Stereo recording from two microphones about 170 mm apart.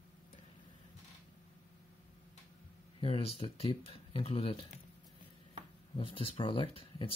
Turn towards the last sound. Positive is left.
turn(degrees=35)  # may be behind; listen again after turning